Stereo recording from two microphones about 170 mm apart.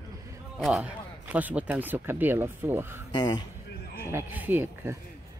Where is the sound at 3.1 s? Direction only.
25° left (ahead or behind).